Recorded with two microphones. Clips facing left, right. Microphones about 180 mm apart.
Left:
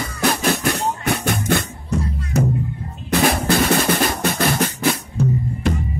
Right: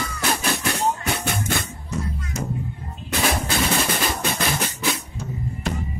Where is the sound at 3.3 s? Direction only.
60° left (ahead or behind).